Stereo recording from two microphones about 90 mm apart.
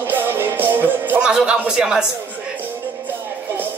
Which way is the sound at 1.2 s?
10° right (ahead or behind).